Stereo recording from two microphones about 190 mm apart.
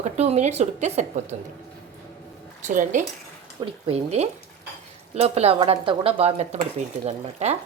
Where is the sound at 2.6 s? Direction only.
40° right (ahead or behind).